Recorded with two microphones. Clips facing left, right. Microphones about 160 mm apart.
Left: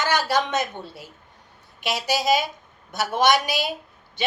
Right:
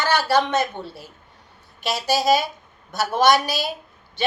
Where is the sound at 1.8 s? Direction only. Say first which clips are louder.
Right 3 dB; 15° left (ahead or behind).